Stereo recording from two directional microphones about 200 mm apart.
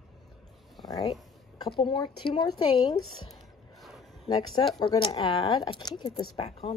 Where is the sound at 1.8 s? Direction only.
25° left (ahead or behind).